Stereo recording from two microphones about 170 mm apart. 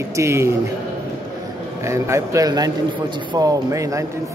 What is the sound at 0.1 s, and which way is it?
Speech, 15° right (ahead or behind).